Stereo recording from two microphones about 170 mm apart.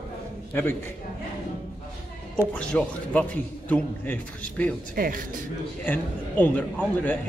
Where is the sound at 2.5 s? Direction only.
5° left (ahead or behind).